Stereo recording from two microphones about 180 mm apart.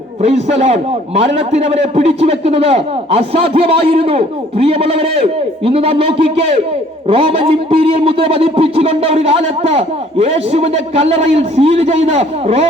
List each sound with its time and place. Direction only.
0.2 s a man's voice: 40° right (ahead or behind)